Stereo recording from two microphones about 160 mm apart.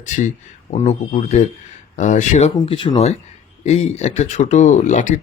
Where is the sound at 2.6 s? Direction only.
35° left (ahead or behind).